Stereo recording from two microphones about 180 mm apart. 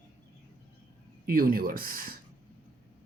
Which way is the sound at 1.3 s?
55° right (ahead or behind).